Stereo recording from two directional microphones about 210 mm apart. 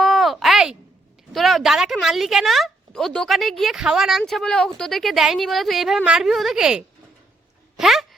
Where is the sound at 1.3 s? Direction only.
Centre (ahead or behind).